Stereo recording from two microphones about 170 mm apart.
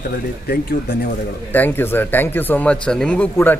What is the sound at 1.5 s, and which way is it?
Speech, 10° left (ahead or behind).